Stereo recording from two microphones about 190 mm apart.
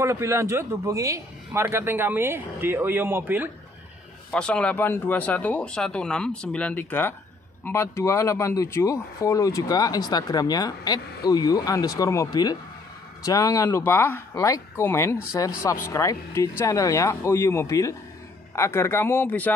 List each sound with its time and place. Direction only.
0.0 s a man's voice: 15° right (ahead or behind)
4.3 s speech: 5° left (ahead or behind)